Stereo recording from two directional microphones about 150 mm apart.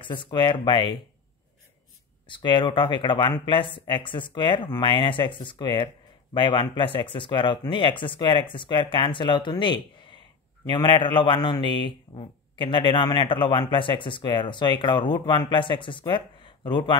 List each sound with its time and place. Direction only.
0.0 s a man's voice: 30° left (ahead or behind)
2.2 s a man's voice: 35° left (ahead or behind)